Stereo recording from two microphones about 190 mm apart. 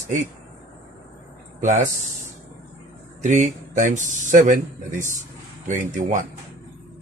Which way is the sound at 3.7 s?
40° right (ahead or behind).